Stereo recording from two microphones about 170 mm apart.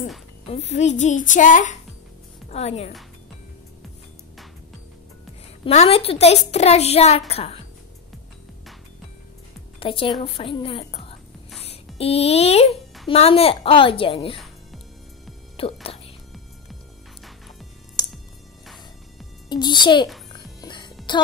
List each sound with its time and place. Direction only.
0.5 s a woman's voice: 40° left (ahead or behind)
2.5 s a woman's voice: 35° left (ahead or behind)
5.7 s a woman's voice: 35° left (ahead or behind)
9.8 s a woman's voice: 30° left (ahead or behind)
14.3 s music: centre (ahead or behind)
15.5 s whispering: 35° left (ahead or behind)
19.5 s a child's voice: 25° left (ahead or behind)
20.3 s music: 25° left (ahead or behind)